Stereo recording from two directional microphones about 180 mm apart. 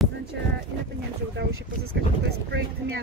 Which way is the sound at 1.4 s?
75° right (ahead or behind).